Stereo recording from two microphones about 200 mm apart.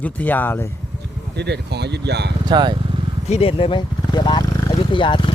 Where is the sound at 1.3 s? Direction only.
55° right (ahead or behind).